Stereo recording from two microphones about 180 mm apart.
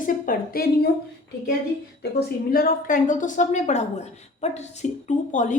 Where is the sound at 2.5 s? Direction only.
50° left (ahead or behind).